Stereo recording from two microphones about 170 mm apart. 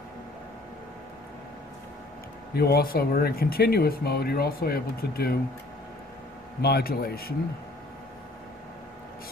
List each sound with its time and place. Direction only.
2.5 s speech: 65° left (ahead or behind)
6.6 s speech: 65° left (ahead or behind)